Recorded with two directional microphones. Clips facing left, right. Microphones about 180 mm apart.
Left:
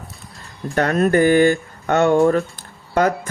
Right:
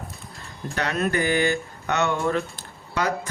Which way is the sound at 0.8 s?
50° left (ahead or behind).